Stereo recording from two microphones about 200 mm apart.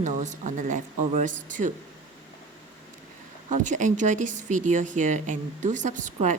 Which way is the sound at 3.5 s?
40° right (ahead or behind).